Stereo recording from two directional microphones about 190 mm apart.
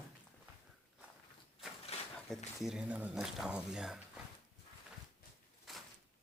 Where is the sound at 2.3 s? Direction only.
Centre (ahead or behind).